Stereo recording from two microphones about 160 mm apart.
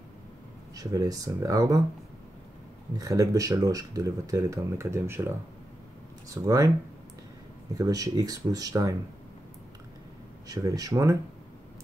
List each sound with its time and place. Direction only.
0.7 s speech: 20° right (ahead or behind)
3.0 s speech: 20° right (ahead or behind)
6.3 s speech: 20° right (ahead or behind)
7.7 s speech: 20° right (ahead or behind)
10.5 s speech: 20° right (ahead or behind)